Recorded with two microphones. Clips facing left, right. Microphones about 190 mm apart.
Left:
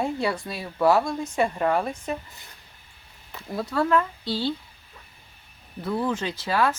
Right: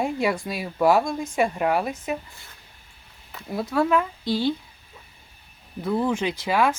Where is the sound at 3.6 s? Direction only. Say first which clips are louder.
Right 1 dB; 10° right (ahead or behind).